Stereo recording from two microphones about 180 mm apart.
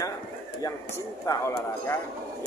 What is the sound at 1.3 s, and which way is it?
Speech, 15° left (ahead or behind).